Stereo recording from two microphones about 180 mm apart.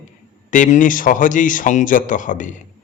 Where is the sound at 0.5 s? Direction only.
45° left (ahead or behind).